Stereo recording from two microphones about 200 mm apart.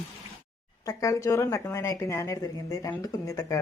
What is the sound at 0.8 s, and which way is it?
Speech, 15° left (ahead or behind).